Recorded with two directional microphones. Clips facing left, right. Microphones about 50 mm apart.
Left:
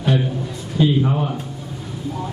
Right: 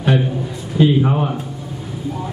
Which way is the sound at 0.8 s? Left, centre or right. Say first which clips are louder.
Right 3 dB; right.